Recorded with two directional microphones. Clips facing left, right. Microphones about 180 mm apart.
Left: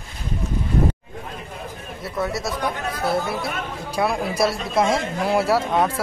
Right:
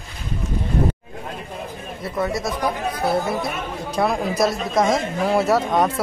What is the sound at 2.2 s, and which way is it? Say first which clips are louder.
Speech: right 2 dB; centre (ahead or behind).